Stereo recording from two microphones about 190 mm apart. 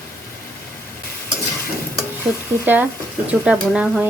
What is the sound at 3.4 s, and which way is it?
Speech, 5° right (ahead or behind).